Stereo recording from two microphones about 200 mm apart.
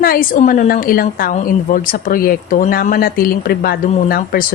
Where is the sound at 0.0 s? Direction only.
45° left (ahead or behind).